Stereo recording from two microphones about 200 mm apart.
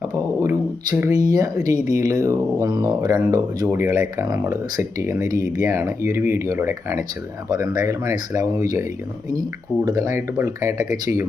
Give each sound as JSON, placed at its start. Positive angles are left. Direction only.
{"t": 0.1, "sound": "speech", "side_deg": -15}
{"t": 1.9, "sound": "speech", "side_deg": 35}
{"t": 2.2, "sound": "speech", "side_deg": -15}
{"t": 9.8, "sound": "speech", "side_deg": -20}